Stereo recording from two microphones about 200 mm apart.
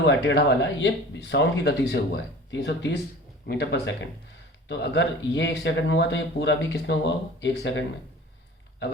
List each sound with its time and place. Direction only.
0.3 s speech: 60° left (ahead or behind)